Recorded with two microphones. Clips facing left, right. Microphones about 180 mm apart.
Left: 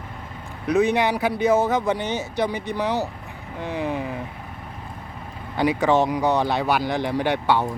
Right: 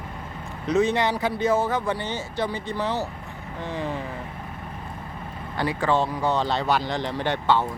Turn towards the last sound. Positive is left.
turn(degrees=15)  # may be behind; listen again after turning